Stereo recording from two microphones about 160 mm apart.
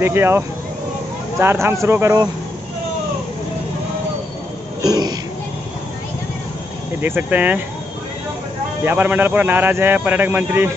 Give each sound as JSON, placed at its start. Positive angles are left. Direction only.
{"t": 0.0, "sound": "speech", "side_deg": -15}
{"t": 4.8, "sound": "throat clearing", "side_deg": -25}
{"t": 7.0, "sound": "speech", "side_deg": -10}
{"t": 8.8, "sound": "speech", "side_deg": -10}